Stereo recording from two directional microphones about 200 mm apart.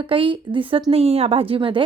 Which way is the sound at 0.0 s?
25° right (ahead or behind).